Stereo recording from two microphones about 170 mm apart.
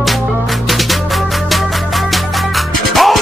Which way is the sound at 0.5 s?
Centre (ahead or behind).